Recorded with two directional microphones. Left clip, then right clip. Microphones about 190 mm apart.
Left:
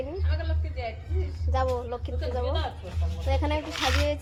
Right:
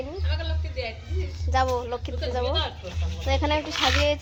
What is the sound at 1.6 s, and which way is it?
Speech, 35° right (ahead or behind).